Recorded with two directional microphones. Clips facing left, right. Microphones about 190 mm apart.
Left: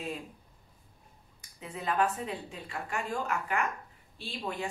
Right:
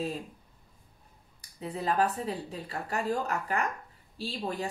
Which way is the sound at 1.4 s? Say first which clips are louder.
Right 5 dB; 35° right (ahead or behind).